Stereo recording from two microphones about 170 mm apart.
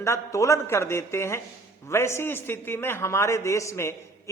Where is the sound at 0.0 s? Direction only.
15° left (ahead or behind).